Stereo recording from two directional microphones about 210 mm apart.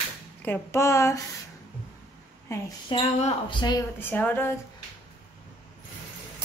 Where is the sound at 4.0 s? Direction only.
10° left (ahead or behind).